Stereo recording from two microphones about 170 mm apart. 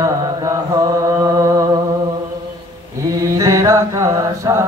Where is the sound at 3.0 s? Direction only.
20° right (ahead or behind).